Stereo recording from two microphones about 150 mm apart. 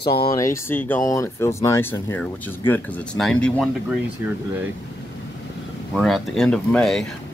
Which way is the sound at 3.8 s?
10° right (ahead or behind).